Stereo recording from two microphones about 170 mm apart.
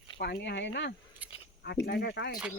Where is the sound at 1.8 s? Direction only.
80° left.